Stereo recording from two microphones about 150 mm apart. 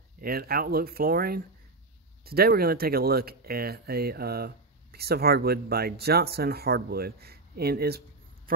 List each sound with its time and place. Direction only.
0.2 s speech: 90° right